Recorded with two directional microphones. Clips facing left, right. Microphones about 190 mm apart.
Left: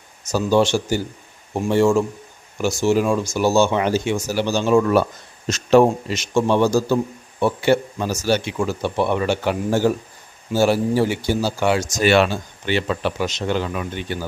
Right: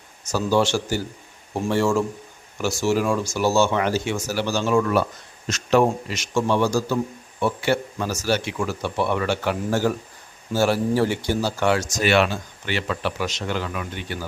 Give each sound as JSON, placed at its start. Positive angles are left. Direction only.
{"t": 0.3, "sound": "a man's voice", "side_deg": 20}
{"t": 11.9, "sound": "speech", "side_deg": 35}
{"t": 12.6, "sound": "a man's voice", "side_deg": 25}